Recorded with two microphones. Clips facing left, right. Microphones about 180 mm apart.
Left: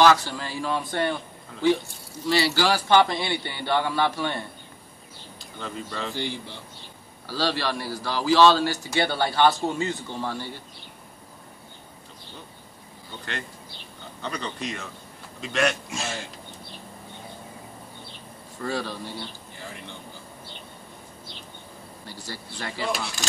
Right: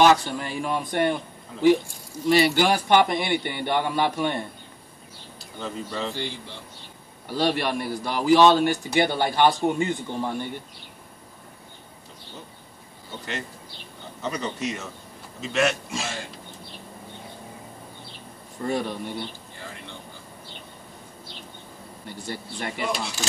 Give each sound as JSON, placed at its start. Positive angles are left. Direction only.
{"t": 0.0, "sound": "a man's voice", "side_deg": -20}
{"t": 5.6, "sound": "speech", "side_deg": -5}
{"t": 7.2, "sound": "a man's voice", "side_deg": -20}
{"t": 14.2, "sound": "speech", "side_deg": -5}
{"t": 18.6, "sound": "a man's voice", "side_deg": -20}
{"t": 22.0, "sound": "a man's voice", "side_deg": -20}